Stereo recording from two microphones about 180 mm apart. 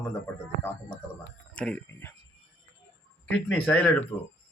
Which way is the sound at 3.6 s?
10° left (ahead or behind).